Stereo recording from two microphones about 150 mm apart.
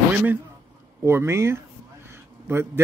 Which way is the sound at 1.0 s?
15° right (ahead or behind).